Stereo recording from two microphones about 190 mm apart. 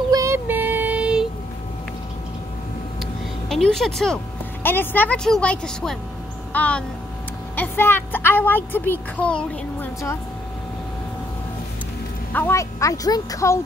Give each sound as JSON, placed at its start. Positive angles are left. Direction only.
{"t": 0.1, "sound": "child singing", "side_deg": -15}
{"t": 3.4, "sound": "a woman's voice", "side_deg": 0}
{"t": 12.3, "sound": "speech", "side_deg": 10}